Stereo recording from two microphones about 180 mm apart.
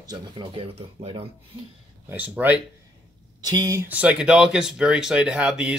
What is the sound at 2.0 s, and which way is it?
Speech, 10° right (ahead or behind).